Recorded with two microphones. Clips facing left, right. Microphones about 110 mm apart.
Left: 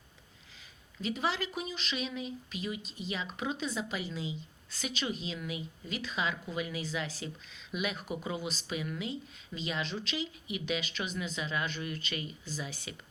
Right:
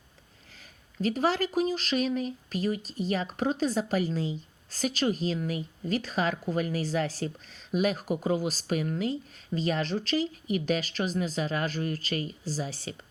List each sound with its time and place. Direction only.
0.9 s speech: 40° right (ahead or behind)